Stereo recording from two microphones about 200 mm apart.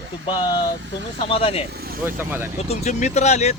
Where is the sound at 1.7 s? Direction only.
50° right (ahead or behind).